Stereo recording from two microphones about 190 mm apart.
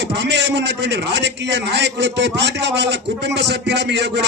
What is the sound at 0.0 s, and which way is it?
A man's voice, 65° right (ahead or behind).